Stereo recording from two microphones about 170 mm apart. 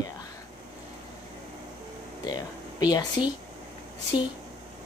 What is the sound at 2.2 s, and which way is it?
Speech, 25° left (ahead or behind).